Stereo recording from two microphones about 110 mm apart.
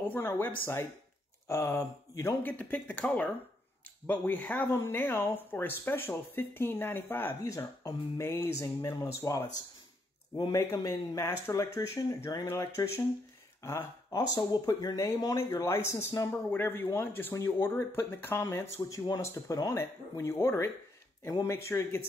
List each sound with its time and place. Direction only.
0.1 s speech: 15° left (ahead or behind)
2.4 s speech: 15° left (ahead or behind)
10.5 s speech: 25° left (ahead or behind)